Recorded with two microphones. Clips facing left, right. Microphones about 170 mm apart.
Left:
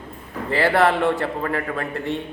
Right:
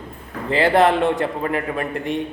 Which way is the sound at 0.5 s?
20° right (ahead or behind).